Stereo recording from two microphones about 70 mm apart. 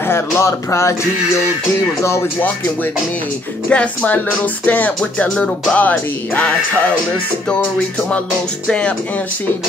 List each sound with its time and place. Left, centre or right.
0.4 s speech: left
3.6 s speech: left